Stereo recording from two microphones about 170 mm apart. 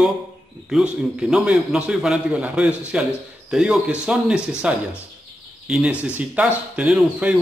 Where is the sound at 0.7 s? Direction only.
5° right (ahead or behind).